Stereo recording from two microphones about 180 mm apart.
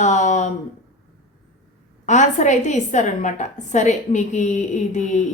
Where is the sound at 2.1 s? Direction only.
40° left (ahead or behind).